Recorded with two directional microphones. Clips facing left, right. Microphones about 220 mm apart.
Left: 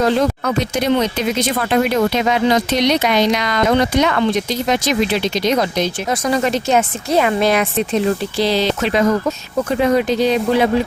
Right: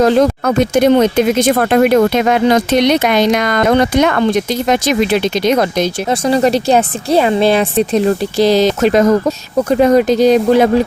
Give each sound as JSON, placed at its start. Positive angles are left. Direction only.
{"t": 0.0, "sound": "speech", "side_deg": -45}
{"t": 6.1, "sound": "speech", "side_deg": -30}